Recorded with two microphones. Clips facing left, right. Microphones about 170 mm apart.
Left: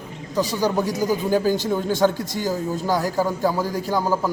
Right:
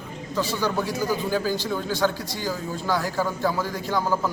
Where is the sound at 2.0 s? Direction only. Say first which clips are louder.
Left 5 dB; 30° left (ahead or behind).